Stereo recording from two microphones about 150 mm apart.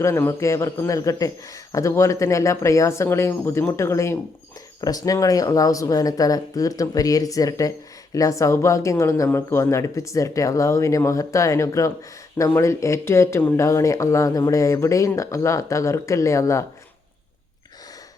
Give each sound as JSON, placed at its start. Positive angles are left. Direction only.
{"t": 0.0, "sound": "speech", "side_deg": 20}